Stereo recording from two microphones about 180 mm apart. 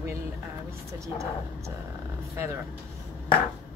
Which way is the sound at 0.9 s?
15° right (ahead or behind).